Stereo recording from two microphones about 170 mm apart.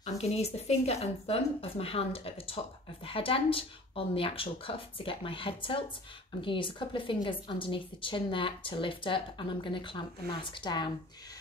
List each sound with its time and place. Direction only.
0.0 s a woman's voice: 40° left (ahead or behind)